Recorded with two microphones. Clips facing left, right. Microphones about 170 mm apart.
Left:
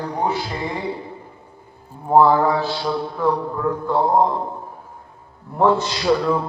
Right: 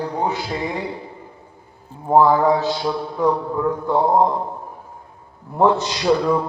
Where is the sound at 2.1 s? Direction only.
15° right (ahead or behind).